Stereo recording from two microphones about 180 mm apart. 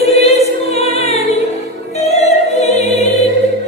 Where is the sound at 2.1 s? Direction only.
40° left (ahead or behind).